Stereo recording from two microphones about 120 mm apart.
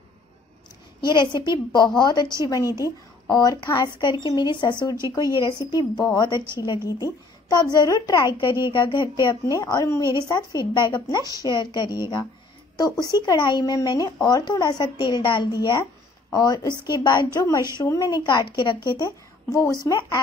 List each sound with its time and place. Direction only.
1.0 s a woman's voice: 40° left (ahead or behind)